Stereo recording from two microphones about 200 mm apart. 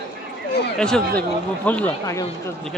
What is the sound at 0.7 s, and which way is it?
Speech, 5° left (ahead or behind).